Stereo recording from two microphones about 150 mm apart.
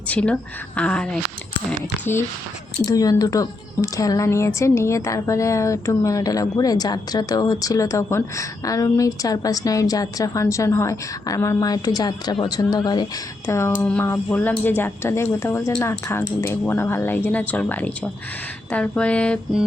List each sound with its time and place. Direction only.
0.1 s speech: 10° left (ahead or behind)
2.8 s a woman's voice: 25° left (ahead or behind); by 19.4 s 5° left (ahead or behind)